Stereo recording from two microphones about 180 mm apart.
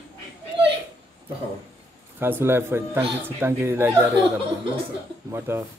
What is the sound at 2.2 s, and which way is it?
Speech, 10° right (ahead or behind).